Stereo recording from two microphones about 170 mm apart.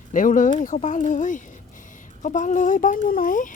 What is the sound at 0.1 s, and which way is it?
Speech, 50° left (ahead or behind).